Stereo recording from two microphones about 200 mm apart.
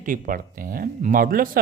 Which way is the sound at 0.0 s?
45° right (ahead or behind).